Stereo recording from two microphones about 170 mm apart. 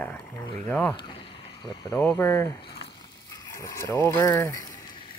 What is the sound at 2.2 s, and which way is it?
Speech, 15° left (ahead or behind).